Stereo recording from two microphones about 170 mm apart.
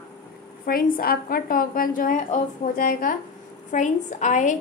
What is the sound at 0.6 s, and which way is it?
A woman's voice, 60° left (ahead or behind).